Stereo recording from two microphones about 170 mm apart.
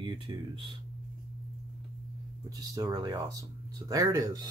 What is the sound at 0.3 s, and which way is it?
Speech, 25° right (ahead or behind).